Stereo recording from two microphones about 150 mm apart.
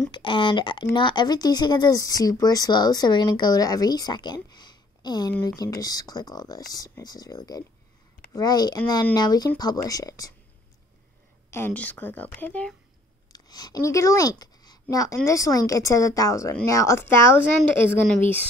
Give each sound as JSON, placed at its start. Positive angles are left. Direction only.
{"t": 0.1, "sound": "speech", "side_deg": 35}
{"t": 11.5, "sound": "speech", "side_deg": 10}
{"t": 13.3, "sound": "speech", "side_deg": 25}